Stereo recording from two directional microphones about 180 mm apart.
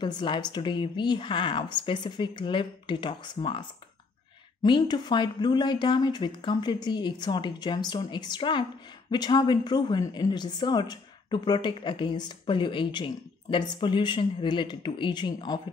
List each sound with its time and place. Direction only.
0.0 s a woman's voice: 25° left (ahead or behind)
4.6 s a woman's voice: 25° left (ahead or behind)